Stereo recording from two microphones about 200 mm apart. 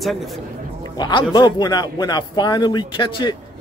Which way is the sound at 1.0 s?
25° left (ahead or behind).